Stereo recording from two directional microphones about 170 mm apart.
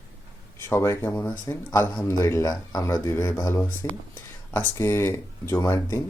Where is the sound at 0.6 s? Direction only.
15° left (ahead or behind).